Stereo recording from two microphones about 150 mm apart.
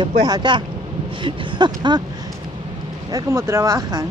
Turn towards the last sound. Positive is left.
turn(degrees=-20)  # may be behind; listen again after turning